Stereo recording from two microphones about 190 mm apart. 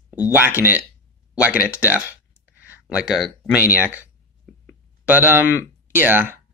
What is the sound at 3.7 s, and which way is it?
Speech, 10° right (ahead or behind).